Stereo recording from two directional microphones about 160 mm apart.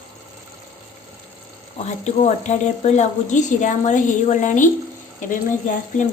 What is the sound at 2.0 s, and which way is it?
Speech, 45° left (ahead or behind).